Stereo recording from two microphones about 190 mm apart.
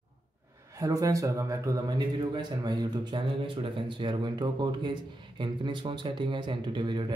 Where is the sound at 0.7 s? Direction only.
20° right (ahead or behind).